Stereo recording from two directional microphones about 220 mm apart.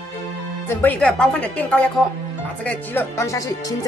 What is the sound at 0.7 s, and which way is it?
Speech, 5° left (ahead or behind).